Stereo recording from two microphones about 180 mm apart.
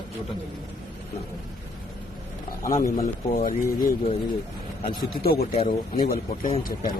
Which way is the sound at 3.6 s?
15° left (ahead or behind).